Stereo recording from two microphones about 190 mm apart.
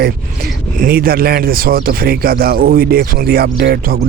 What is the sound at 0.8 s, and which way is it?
Speech, 50° right (ahead or behind).